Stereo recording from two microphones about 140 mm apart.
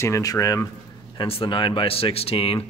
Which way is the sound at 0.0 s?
25° left (ahead or behind).